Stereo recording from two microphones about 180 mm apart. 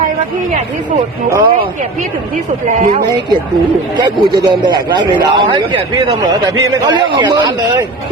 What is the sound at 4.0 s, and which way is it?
A man's voice, 25° right (ahead or behind).